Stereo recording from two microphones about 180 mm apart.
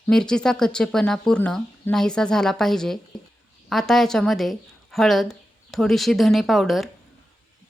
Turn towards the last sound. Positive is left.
turn(degrees=0)  # may be behind; listen again after turning